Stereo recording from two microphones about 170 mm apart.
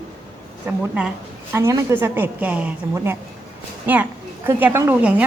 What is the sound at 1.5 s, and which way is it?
A woman's voice, 15° right (ahead or behind).